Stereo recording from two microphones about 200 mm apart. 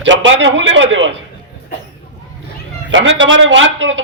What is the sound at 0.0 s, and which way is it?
A man's voice, 70° right (ahead or behind).